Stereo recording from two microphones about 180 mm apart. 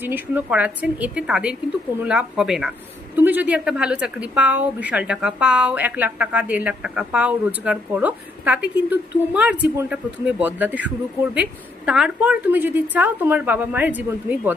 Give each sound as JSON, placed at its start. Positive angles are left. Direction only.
{"t": 0.0, "sound": "a woman's voice", "side_deg": -10}